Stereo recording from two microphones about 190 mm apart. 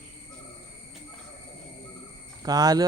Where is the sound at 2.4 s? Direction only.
20° right (ahead or behind).